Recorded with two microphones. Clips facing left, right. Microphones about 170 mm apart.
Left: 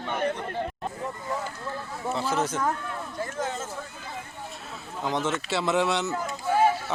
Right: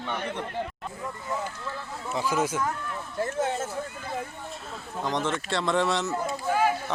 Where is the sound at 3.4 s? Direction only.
55° right (ahead or behind).